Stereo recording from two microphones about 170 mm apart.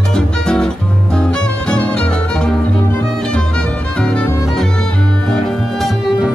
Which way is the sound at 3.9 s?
5° left (ahead or behind).